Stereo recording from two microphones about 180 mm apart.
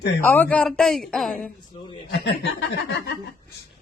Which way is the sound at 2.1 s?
70° left (ahead or behind).